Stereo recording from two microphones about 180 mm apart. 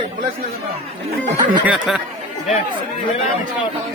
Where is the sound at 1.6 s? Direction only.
5° right (ahead or behind).